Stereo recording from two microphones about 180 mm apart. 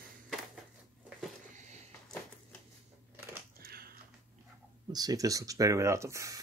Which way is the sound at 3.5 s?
55° right (ahead or behind).